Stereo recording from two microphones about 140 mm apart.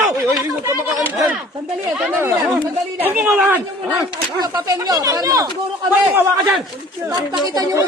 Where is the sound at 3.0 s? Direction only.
15° right (ahead or behind).